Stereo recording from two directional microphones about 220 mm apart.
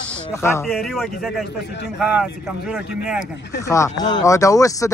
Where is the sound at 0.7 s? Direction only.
Centre (ahead or behind).